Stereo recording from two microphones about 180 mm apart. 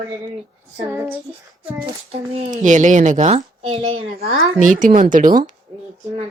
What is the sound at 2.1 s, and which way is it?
A woman's voice, 35° right (ahead or behind).